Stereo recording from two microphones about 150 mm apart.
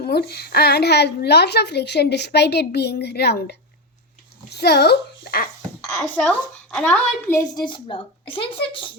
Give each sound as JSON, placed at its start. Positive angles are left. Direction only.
{"t": 0.0, "sound": "a woman's voice", "side_deg": 90}
{"t": 6.0, "sound": "a woman's voice", "side_deg": 5}
{"t": 7.3, "sound": "a woman's voice", "side_deg": 30}